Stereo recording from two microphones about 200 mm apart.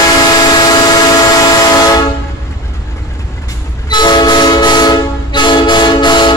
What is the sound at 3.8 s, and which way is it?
Train, 20° left (ahead or behind).